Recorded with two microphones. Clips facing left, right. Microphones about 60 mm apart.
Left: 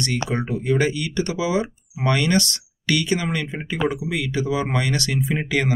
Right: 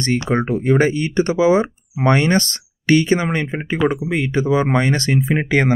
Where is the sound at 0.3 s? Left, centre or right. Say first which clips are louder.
Right 7 dB; right.